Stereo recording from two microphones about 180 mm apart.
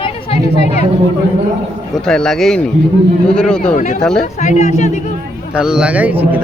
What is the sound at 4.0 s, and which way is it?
Speech, 5° left (ahead or behind).